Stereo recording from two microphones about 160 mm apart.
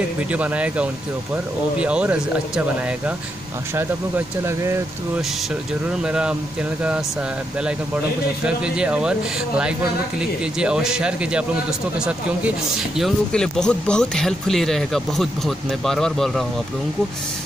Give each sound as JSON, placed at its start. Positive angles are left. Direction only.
{"t": 0.3, "sound": "speech", "side_deg": -10}
{"t": 4.5, "sound": "speech", "side_deg": -15}
{"t": 6.0, "sound": "speech", "side_deg": -5}
{"t": 8.5, "sound": "speech", "side_deg": -5}
{"t": 10.6, "sound": "speech", "side_deg": -5}